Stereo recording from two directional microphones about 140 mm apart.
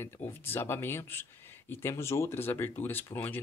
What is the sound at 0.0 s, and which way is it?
Speech, 15° left (ahead or behind).